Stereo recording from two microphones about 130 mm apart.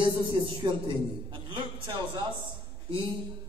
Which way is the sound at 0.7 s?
40° right (ahead or behind).